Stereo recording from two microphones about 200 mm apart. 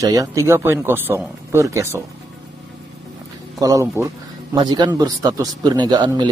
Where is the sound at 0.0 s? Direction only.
15° right (ahead or behind).